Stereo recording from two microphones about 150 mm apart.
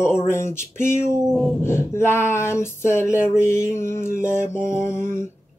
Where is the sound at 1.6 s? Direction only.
15° left (ahead or behind).